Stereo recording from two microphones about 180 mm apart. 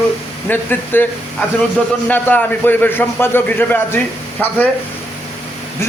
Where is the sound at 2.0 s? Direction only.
10° left (ahead or behind).